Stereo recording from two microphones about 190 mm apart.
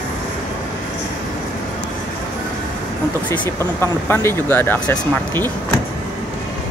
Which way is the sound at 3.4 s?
10° left (ahead or behind).